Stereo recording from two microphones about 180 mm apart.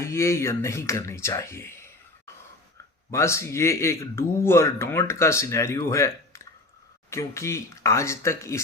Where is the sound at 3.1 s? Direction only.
15° left (ahead or behind).